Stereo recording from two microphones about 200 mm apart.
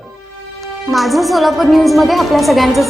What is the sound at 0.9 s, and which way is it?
A woman's voice, centre (ahead or behind).